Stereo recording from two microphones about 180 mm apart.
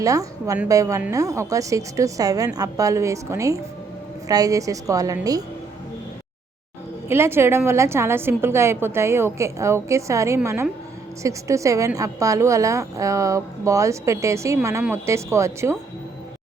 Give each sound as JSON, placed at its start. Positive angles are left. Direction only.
{"t": 0.0, "sound": "a woman's voice", "side_deg": -20}
{"t": 7.1, "sound": "a woman's voice", "side_deg": -15}